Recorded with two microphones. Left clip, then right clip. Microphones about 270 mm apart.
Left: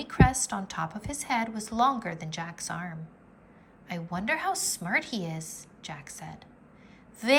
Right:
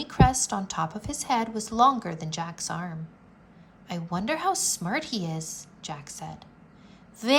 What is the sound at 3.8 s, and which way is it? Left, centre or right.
A woman's voice, centre.